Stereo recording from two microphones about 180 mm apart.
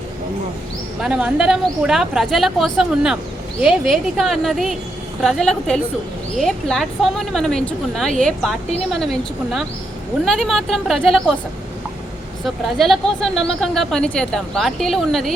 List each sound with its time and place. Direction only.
1.0 s speech: 5° right (ahead or behind)
12.5 s speech: centre (ahead or behind)